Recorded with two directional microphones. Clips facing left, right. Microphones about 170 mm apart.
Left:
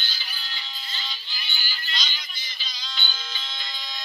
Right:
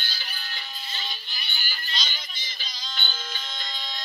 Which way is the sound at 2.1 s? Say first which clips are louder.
Right 1 dB; 50° right (ahead or behind).